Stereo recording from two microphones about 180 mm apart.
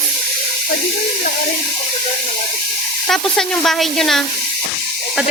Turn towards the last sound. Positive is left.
turn(degrees=0)  # may be behind; listen again after turning